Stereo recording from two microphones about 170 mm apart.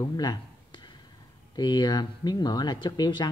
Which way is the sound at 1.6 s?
25° left (ahead or behind).